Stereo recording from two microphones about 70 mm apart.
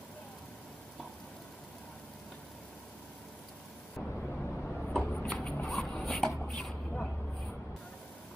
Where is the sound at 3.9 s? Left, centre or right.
Centre.